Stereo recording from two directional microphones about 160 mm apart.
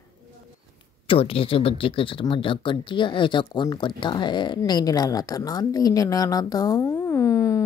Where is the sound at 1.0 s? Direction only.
35° left (ahead or behind).